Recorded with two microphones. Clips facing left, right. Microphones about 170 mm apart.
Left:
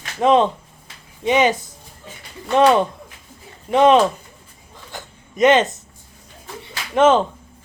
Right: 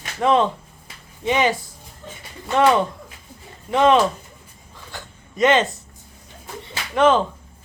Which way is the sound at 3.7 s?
20° left (ahead or behind).